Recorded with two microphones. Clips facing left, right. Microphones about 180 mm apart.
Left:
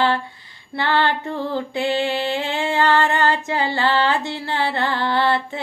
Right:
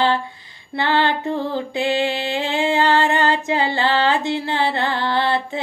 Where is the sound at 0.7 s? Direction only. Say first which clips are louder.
Right 1 dB; 15° right (ahead or behind).